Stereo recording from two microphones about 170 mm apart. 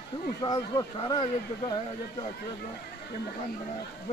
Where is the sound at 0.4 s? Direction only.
20° left (ahead or behind).